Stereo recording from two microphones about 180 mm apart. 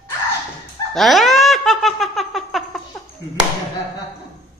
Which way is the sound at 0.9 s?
Centre (ahead or behind).